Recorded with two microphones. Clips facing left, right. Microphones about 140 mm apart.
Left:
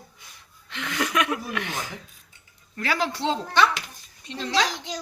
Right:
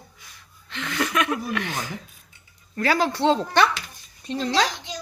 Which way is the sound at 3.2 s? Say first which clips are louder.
Right 3 dB; 60° right (ahead or behind).